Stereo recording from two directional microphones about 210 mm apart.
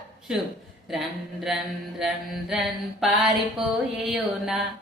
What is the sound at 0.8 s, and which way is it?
Mantra, centre (ahead or behind).